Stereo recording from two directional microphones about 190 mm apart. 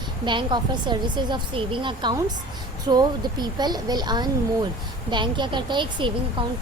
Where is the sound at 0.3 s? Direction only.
25° right (ahead or behind).